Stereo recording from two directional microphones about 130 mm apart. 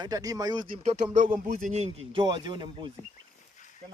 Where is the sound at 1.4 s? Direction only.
90° right.